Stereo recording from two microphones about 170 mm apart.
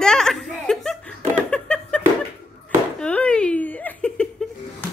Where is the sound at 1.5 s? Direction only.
5° left (ahead or behind).